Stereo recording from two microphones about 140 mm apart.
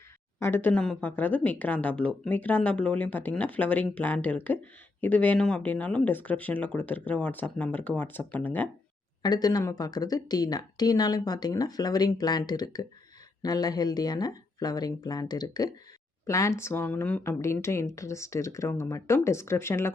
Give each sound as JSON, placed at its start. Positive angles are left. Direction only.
{"t": 0.4, "sound": "speech", "side_deg": 15}
{"t": 9.2, "sound": "speech", "side_deg": 30}